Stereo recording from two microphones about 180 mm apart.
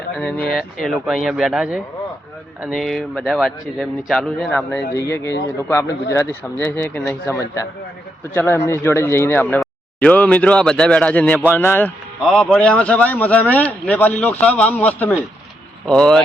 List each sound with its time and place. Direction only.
0.2 s a man's voice: 5° left (ahead or behind)